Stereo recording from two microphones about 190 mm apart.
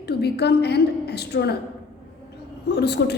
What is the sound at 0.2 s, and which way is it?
A woman's voice, 60° left (ahead or behind).